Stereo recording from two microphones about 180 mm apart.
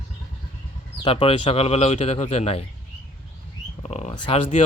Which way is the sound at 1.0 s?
30° left (ahead or behind).